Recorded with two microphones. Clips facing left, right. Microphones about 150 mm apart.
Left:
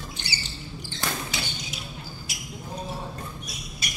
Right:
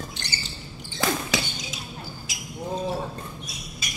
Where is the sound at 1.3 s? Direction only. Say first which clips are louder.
Right 7 dB; 90° right.